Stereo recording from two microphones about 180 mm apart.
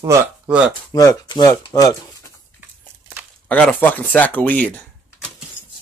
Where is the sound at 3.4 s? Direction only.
10° left (ahead or behind).